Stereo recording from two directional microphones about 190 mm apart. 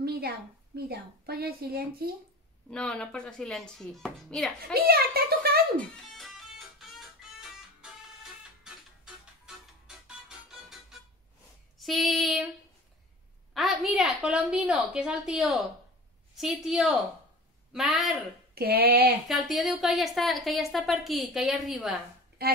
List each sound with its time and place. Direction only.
0.0 s a sound: 55° right (ahead or behind)
0.7 s a woman's voice: 55° right (ahead or behind)
2.7 s a woman's voice: 5° left (ahead or behind)
4.7 s speech: 55° right (ahead or behind)
5.8 s music: centre (ahead or behind)
11.8 s a woman's voice: centre (ahead or behind)
13.5 s a woman's voice: centre (ahead or behind)
18.5 s a sound: 55° right (ahead or behind)
19.2 s a woman's voice: centre (ahead or behind)
22.4 s a sound: 55° right (ahead or behind)